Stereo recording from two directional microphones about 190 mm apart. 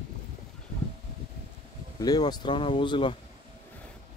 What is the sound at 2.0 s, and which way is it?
Speech, 20° left (ahead or behind).